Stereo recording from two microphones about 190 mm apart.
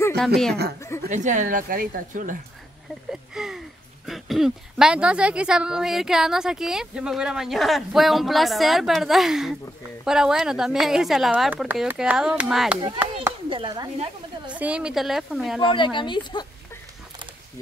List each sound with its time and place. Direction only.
0.7 s a woman's voice: 15° left (ahead or behind)
1.0 s speech: 40° right (ahead or behind)
3.1 s speech: 5° right (ahead or behind)
13.5 s speech: 25° right (ahead or behind)
14.5 s speech: 5° right (ahead or behind)
15.6 s speech: 25° left (ahead or behind)